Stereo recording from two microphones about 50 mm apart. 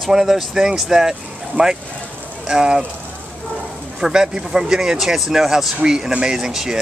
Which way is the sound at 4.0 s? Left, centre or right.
Centre.